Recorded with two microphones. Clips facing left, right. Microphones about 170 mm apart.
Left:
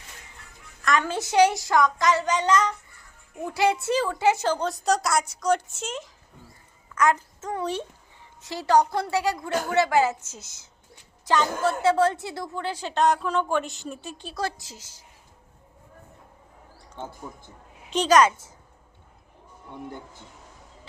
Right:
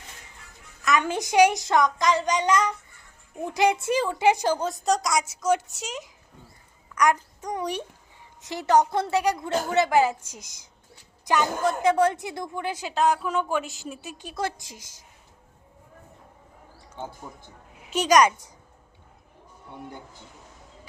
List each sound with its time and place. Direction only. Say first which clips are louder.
0.9 s a woman's voice: right 1 dB; 15° right (ahead or behind)
4.7 s a woman's voice: even; centre (ahead or behind)
6.9 s a child's voice: even; 15° right (ahead or behind)
17.0 s a woman's voice: even; 10° right (ahead or behind)